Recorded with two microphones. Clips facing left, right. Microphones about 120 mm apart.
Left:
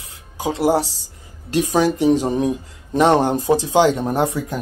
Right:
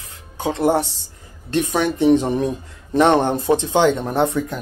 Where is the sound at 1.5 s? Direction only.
35° left (ahead or behind).